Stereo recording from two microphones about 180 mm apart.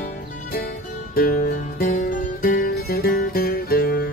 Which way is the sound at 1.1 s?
55° left (ahead or behind).